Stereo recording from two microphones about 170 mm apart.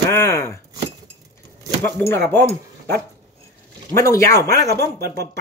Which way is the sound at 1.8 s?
15° left (ahead or behind).